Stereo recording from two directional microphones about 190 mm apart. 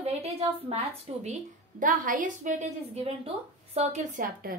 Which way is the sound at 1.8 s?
45° right (ahead or behind).